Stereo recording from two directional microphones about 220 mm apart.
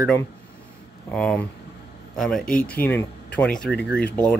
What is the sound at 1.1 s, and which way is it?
Speech, 5° left (ahead or behind).